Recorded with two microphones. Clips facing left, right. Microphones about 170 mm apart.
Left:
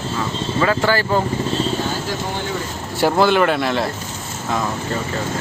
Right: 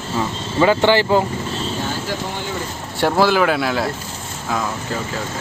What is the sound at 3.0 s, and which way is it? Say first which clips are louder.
Speech: left 1 dB; centre (ahead or behind).